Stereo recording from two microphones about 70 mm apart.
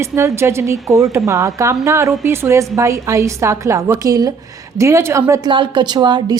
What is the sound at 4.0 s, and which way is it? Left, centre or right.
Speech, right.